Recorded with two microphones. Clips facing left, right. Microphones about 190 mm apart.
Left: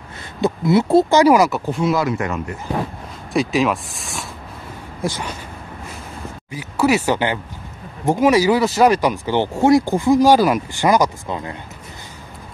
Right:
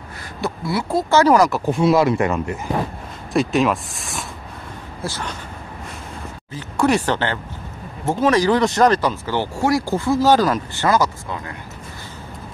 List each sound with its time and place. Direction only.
0.4 s speech: 20° left (ahead or behind)
1.1 s speech: 10° left (ahead or behind)
1.7 s speech: 25° right (ahead or behind)
3.3 s speech: centre (ahead or behind)
5.0 s speech: 15° left (ahead or behind)
6.5 s speech: 10° left (ahead or behind)